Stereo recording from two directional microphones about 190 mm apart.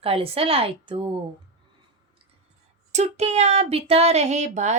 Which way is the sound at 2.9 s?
35° right (ahead or behind).